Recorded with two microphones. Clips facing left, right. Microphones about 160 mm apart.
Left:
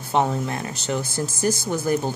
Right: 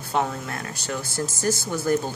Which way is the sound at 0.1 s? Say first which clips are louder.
Left 4 dB; 20° left (ahead or behind).